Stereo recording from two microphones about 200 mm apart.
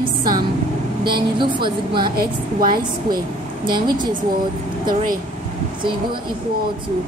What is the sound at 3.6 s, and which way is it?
Speech, 20° right (ahead or behind).